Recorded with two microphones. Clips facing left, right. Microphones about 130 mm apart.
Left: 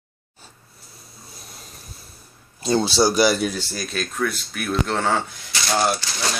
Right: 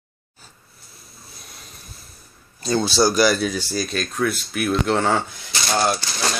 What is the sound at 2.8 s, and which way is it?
Speech, 20° left (ahead or behind).